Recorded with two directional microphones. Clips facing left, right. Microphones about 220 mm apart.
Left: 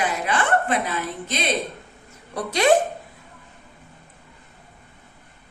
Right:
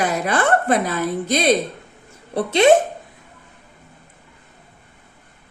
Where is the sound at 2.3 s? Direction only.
25° right (ahead or behind).